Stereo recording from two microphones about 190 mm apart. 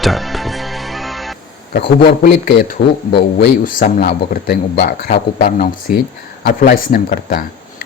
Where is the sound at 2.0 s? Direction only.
55° left (ahead or behind).